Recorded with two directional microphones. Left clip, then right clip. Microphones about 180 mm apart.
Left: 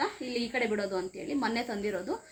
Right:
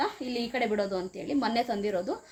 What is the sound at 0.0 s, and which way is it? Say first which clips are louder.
Speech: right 2 dB; 70° right (ahead or behind).